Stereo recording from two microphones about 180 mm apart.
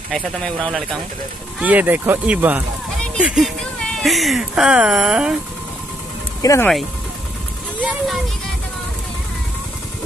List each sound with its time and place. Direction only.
0.1 s speech: 5° left (ahead or behind)
1.6 s speech: 10° right (ahead or behind)
6.4 s speech: 15° left (ahead or behind)